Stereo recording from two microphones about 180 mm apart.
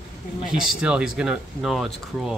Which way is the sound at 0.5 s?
5° right (ahead or behind).